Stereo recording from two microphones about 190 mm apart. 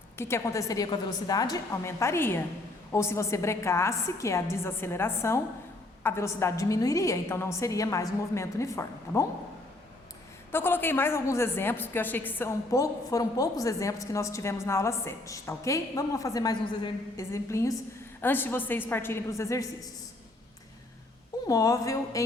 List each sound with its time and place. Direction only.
0.2 s a woman's voice: 15° left (ahead or behind)
10.5 s a woman's voice: 10° left (ahead or behind)
21.4 s a woman's voice: 20° left (ahead or behind)